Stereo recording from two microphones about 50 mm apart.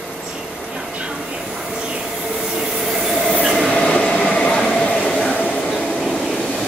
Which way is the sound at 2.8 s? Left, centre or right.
Centre.